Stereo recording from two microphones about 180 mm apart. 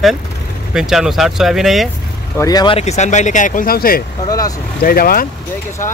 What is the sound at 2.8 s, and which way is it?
Speech, 40° left (ahead or behind).